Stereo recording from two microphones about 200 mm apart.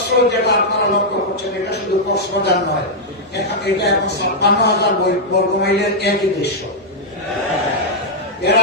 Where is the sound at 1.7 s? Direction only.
55° left (ahead or behind).